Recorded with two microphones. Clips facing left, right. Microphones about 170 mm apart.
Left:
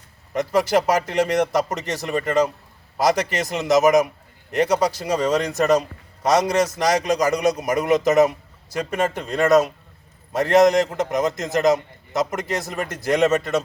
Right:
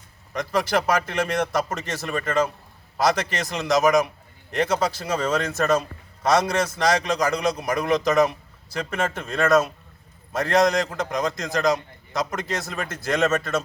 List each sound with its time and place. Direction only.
0.3 s a man's voice: 20° left (ahead or behind)
5.0 s a man's voice: 15° left (ahead or behind)